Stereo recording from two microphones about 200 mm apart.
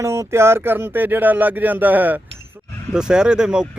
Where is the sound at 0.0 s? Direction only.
15° right (ahead or behind).